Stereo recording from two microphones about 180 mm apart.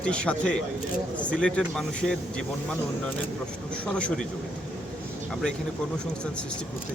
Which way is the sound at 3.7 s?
5° left (ahead or behind).